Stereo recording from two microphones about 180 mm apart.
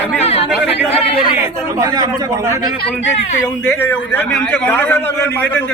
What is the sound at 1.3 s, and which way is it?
Speech, 15° right (ahead or behind).